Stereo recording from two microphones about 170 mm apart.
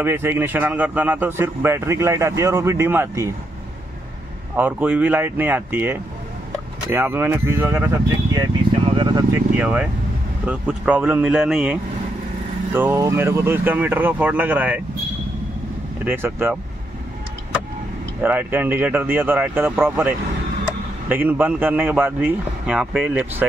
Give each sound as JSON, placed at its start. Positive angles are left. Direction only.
{"t": 0.0, "sound": "a man's voice", "side_deg": -15}
{"t": 4.6, "sound": "a man's voice", "side_deg": -10}
{"t": 9.3, "sound": "a man's voice", "side_deg": -10}
{"t": 12.7, "sound": "a man's voice", "side_deg": -15}
{"t": 16.1, "sound": "a man's voice", "side_deg": -15}
{"t": 18.2, "sound": "a man's voice", "side_deg": -10}